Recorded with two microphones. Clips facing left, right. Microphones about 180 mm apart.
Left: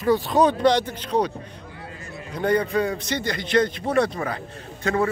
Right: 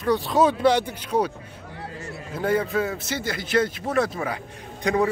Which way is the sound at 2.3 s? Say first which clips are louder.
Left 2 dB; 5° right (ahead or behind).